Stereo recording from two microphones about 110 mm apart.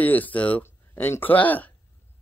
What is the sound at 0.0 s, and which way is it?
Speech, 15° left (ahead or behind).